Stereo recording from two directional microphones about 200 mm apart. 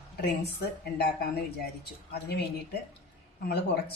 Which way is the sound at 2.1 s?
55° left (ahead or behind).